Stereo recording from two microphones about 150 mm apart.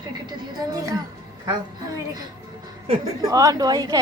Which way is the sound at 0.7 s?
25° right (ahead or behind).